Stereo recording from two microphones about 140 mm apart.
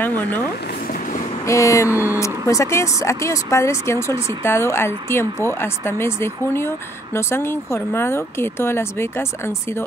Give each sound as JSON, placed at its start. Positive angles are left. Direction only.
{"t": 0.0, "sound": "speech", "side_deg": 15}
{"t": 1.5, "sound": "speech", "side_deg": 20}